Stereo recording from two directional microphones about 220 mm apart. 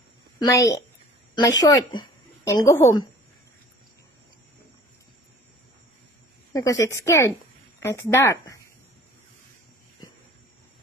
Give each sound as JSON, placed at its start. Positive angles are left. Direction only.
{"t": 0.4, "sound": "a woman's voice", "side_deg": 15}
{"t": 6.5, "sound": "speech", "side_deg": 15}